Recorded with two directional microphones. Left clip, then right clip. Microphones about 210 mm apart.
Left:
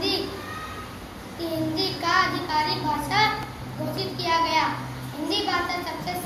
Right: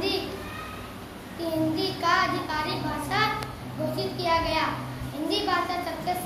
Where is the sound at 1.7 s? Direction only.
15° right (ahead or behind).